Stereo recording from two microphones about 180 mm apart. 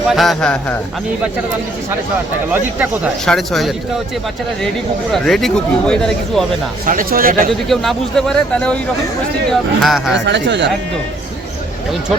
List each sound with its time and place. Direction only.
0.1 s speech: centre (ahead or behind)
2.5 s speech: 10° right (ahead or behind)
3.2 s speech: centre (ahead or behind)
5.1 s speech: centre (ahead or behind)
6.8 s speech: 50° right (ahead or behind)
7.7 s speech: centre (ahead or behind)
10.1 s speech: 80° right